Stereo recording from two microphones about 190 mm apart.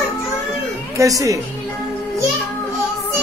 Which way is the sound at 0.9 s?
15° right (ahead or behind).